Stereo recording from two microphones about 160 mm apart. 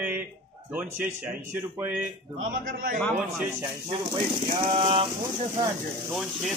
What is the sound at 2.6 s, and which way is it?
Speech, 60° right (ahead or behind).